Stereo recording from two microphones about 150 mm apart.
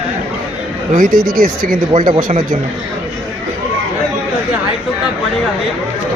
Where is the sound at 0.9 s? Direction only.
65° right (ahead or behind).